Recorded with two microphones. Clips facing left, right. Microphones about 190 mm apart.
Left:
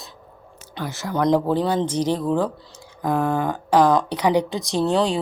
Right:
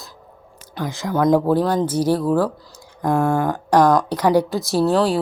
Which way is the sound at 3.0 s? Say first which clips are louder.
Right 3 dB; centre (ahead or behind).